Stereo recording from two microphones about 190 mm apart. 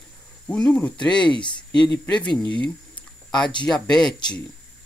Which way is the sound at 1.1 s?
25° left (ahead or behind).